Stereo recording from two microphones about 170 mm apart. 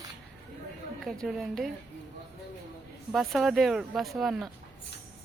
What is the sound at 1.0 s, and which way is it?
Speech, centre (ahead or behind).